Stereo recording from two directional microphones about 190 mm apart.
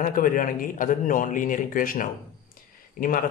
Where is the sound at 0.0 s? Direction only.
45° left (ahead or behind).